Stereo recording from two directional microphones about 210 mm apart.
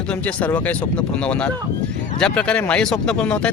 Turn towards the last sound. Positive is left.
turn(degrees=5)  # may be behind; listen again after turning